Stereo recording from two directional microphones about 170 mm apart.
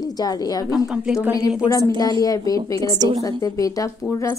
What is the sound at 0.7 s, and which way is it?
Speech, 5° right (ahead or behind).